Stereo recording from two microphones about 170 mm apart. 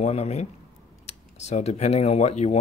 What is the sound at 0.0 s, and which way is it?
Speech, 40° left (ahead or behind).